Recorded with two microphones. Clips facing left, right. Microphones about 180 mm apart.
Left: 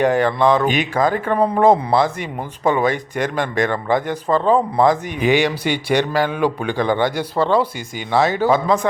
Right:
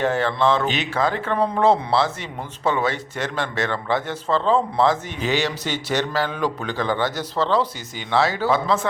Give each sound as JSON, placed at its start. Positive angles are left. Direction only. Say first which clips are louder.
{"t": 0.0, "sound": "a man's voice", "louder": "left 5 dB", "side_deg": 15}
{"t": 0.8, "sound": "speech", "louder": "left 4 dB", "side_deg": 50}
{"t": 1.6, "sound": "a man's voice", "louder": "left 4 dB", "side_deg": 15}